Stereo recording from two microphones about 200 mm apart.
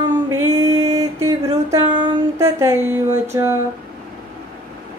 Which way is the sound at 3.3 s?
15° right (ahead or behind).